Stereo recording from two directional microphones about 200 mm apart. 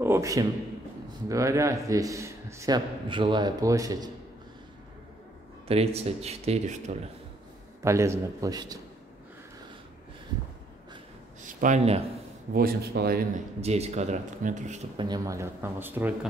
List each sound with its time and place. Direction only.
0.0 s a man's voice: 15° right (ahead or behind)
5.7 s speech: 30° right (ahead or behind)
7.8 s a man's voice: 15° right (ahead or behind)
11.4 s speech: 40° right (ahead or behind)
12.5 s speech: 50° right (ahead or behind)
13.6 s speech: 30° right (ahead or behind)
15.0 s a man's voice: 20° right (ahead or behind)